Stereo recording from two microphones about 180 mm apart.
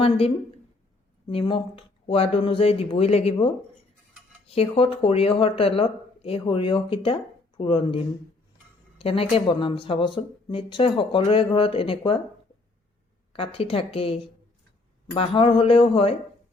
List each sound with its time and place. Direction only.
1.3 s speech: 30° left (ahead or behind)
4.4 s speech: 35° left (ahead or behind)
13.3 s speech: 30° left (ahead or behind)